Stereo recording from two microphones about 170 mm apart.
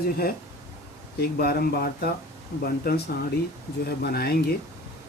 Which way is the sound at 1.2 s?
65° left (ahead or behind).